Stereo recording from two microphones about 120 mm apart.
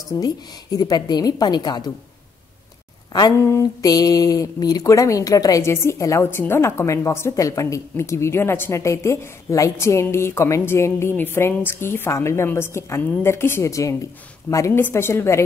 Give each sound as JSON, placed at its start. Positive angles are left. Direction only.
{"t": 0.1, "sound": "a woman's voice", "side_deg": 25}
{"t": 3.1, "sound": "speech", "side_deg": 35}